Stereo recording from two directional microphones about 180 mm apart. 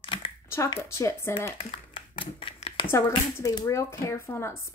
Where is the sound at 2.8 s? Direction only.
15° left (ahead or behind).